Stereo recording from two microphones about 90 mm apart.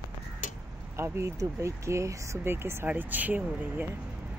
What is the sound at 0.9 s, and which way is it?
Speech, 30° right (ahead or behind).